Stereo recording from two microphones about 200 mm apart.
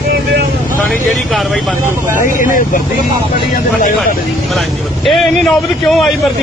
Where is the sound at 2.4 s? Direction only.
40° left (ahead or behind).